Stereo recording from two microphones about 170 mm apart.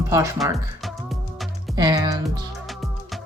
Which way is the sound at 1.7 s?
25° right (ahead or behind).